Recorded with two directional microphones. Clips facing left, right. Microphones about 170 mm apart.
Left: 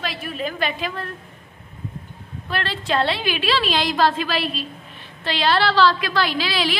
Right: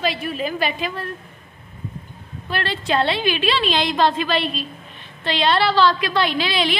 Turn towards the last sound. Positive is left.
turn(degrees=5)  # may be behind; listen again after turning